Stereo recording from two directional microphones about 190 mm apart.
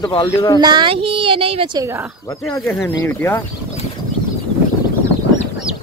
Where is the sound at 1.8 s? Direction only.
15° right (ahead or behind).